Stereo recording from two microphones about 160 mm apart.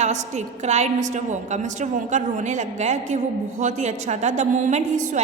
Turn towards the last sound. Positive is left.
turn(degrees=-50)  # may be behind; listen again after turning